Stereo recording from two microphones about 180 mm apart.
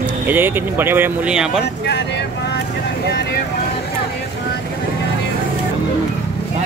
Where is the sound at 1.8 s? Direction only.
70° left (ahead or behind).